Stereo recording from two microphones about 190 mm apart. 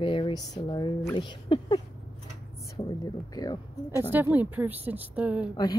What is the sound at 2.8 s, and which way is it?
Speech, 20° left (ahead or behind).